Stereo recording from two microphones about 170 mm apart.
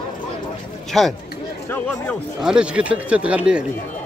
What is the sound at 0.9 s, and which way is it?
Speech, centre (ahead or behind).